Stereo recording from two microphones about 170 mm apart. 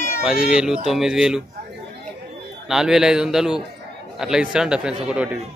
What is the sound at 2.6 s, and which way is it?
A man's voice, 5° right (ahead or behind).